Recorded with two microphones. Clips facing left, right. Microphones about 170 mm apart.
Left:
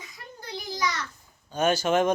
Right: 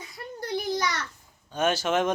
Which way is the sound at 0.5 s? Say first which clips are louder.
Right 4 dB; 60° right (ahead or behind).